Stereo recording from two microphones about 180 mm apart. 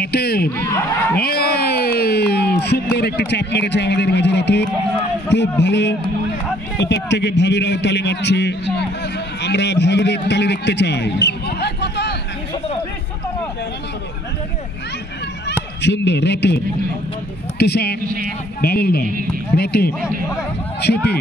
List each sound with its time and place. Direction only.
0.0 s speech: 60° left (ahead or behind)
0.5 s speech: 10° left (ahead or behind)
1.2 s a man's voice: 60° left (ahead or behind)
15.8 s a man's voice: 75° left (ahead or behind)
18.0 s speech: 50° right (ahead or behind)
18.6 s speech: 60° left (ahead or behind)